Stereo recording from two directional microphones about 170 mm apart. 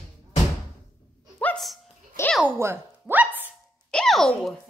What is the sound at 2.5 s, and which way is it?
Speech, 15° right (ahead or behind).